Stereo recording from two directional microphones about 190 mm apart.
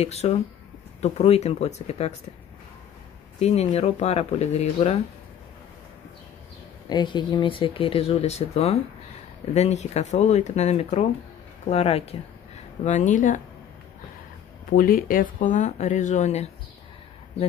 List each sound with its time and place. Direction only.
0.0 s speech: 35° left (ahead or behind)
3.3 s speech: 35° left (ahead or behind)
6.9 s speech: 25° left (ahead or behind); by 13.4 s 40° left (ahead or behind)
14.8 s speech: 50° left (ahead or behind)